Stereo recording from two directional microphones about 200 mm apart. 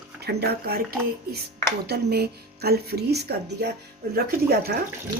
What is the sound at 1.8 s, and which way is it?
Speech, 55° right (ahead or behind).